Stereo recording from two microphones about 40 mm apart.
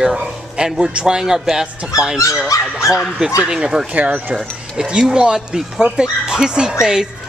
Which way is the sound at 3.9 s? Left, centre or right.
Right.